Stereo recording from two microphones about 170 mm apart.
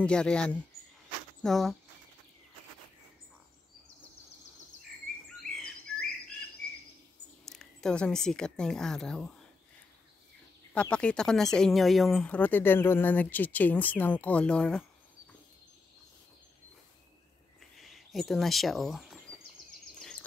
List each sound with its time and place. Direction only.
0.0 s speech: 5° left (ahead or behind)
5.4 s bird: centre (ahead or behind)
6.6 s a sound: 55° right (ahead or behind)
7.4 s speech: 5° left (ahead or behind)
10.7 s speech: 5° left (ahead or behind)
17.6 s a sound: centre (ahead or behind)